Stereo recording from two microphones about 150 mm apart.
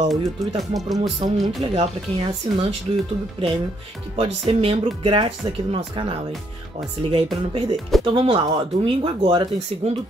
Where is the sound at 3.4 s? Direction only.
35° right (ahead or behind).